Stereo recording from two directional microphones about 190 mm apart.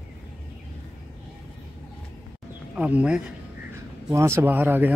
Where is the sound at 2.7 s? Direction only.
5° right (ahead or behind).